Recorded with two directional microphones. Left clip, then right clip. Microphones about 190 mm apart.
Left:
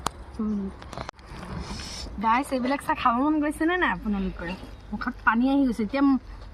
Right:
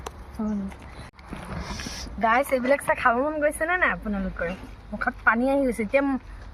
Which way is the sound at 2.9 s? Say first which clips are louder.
Right 1 dB; 10° right (ahead or behind).